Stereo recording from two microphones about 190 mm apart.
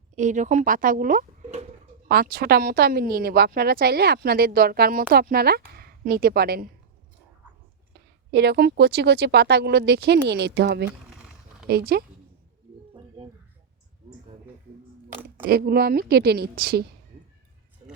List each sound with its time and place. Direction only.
0.2 s speech: 40° right (ahead or behind)
2.0 s speech: 50° right (ahead or behind)
8.3 s speech: 60° right (ahead or behind)
11.1 s a sound: 5° right (ahead or behind)
11.7 s speech: 50° right (ahead or behind)
15.1 s a sound: 10° right (ahead or behind)
15.4 s speech: 55° right (ahead or behind)